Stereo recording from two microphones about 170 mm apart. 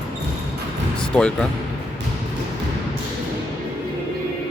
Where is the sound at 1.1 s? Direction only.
5° left (ahead or behind).